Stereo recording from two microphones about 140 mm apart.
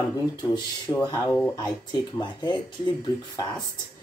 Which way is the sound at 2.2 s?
35° left (ahead or behind).